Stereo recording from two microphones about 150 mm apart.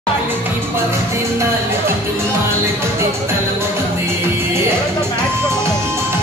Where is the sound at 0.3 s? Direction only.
15° right (ahead or behind).